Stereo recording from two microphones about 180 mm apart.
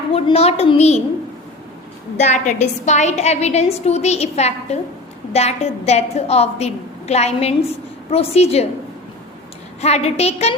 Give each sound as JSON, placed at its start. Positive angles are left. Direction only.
{"t": 0.1, "sound": "a woman's voice", "side_deg": 35}
{"t": 2.1, "sound": "a woman's voice", "side_deg": 40}
{"t": 9.8, "sound": "a woman's voice", "side_deg": 35}